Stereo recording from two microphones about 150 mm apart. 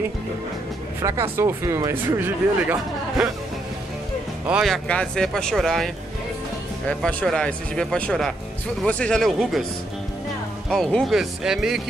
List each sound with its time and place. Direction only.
1.0 s speech: 20° right (ahead or behind)
4.5 s speech: 5° right (ahead or behind)
4.8 s speech: 5° left (ahead or behind)
6.9 s speech: 10° left (ahead or behind)
10.7 s speech: 5° left (ahead or behind)